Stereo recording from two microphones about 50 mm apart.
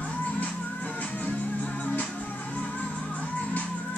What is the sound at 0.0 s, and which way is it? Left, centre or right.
Music, left.